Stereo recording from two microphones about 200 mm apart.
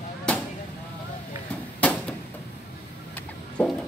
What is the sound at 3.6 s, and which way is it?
Music, 5° left (ahead or behind).